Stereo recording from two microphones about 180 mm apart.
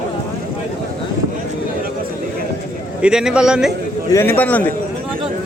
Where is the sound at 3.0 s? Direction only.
5° right (ahead or behind).